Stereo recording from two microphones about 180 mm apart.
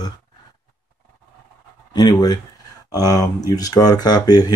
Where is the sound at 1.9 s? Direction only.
25° left (ahead or behind).